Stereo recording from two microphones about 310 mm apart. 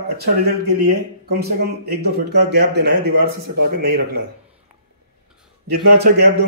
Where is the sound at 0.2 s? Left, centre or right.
Right.